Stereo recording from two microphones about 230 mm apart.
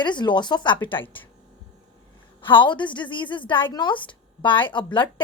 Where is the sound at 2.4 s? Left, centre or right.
Left.